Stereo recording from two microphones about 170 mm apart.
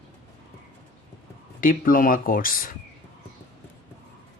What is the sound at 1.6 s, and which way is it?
Speech, 55° left (ahead or behind).